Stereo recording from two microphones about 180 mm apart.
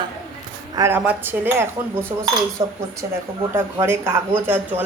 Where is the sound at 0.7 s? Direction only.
15° right (ahead or behind).